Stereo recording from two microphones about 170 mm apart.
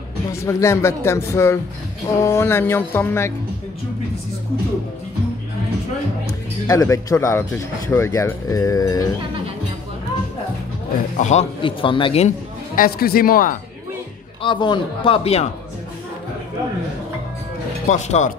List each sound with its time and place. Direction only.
0.3 s speech: 15° left (ahead or behind)
6.2 s speech: 20° left (ahead or behind)
11.1 s speech: 45° left (ahead or behind)
11.6 s a man's voice: 30° left (ahead or behind)
12.7 s speech: 60° left (ahead or behind)
14.4 s a man's voice: 30° left (ahead or behind)
17.8 s speech: 45° left (ahead or behind)